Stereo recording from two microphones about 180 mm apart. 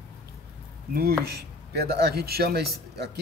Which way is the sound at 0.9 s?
60° right (ahead or behind).